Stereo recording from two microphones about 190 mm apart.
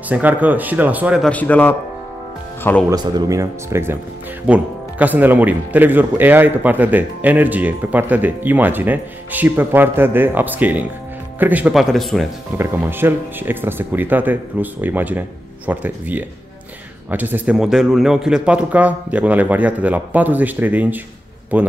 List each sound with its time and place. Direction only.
0.1 s speech: 10° right (ahead or behind)
1.3 s a man's voice: 10° left (ahead or behind)
2.9 s speech: 20° right (ahead or behind); by 12.3 s centre (ahead or behind)
12.5 s speech: 10° right (ahead or behind)